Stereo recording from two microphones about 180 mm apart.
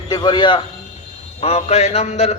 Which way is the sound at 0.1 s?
25° left (ahead or behind).